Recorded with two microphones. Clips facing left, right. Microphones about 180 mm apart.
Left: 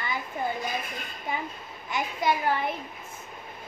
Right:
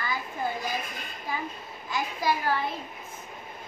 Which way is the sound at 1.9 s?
20° left (ahead or behind).